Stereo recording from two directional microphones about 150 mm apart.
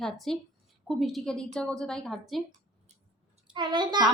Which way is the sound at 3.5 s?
30° right (ahead or behind).